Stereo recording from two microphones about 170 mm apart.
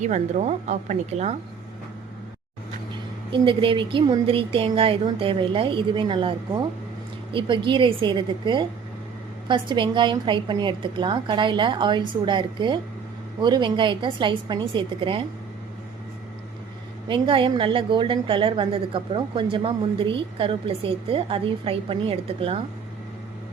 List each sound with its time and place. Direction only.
0.0 s speech: 45° right (ahead or behind)
3.3 s a woman's voice: 30° right (ahead or behind)
17.1 s a woman's voice: 30° right (ahead or behind)